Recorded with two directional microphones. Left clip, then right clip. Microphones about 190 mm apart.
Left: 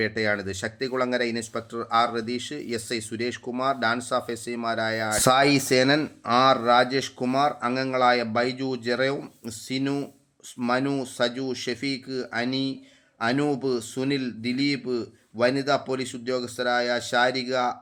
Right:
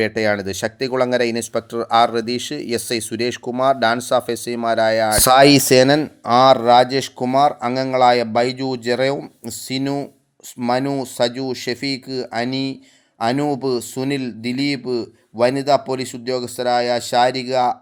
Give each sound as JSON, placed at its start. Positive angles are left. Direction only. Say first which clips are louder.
{"t": 0.0, "sound": "speech", "louder": "right 7 dB", "side_deg": -40}